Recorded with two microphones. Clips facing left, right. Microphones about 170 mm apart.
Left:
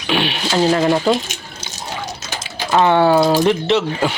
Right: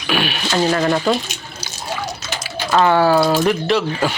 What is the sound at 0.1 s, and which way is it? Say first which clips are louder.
Speech: left 1 dB; 25° left (ahead or behind).